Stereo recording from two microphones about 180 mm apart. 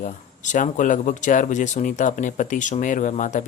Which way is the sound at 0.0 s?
45° left (ahead or behind).